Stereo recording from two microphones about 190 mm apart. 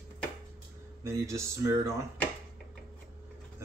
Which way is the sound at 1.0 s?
15° right (ahead or behind).